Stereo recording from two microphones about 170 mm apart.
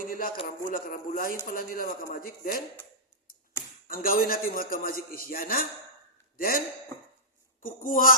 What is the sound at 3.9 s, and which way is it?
A man's voice, 55° left (ahead or behind).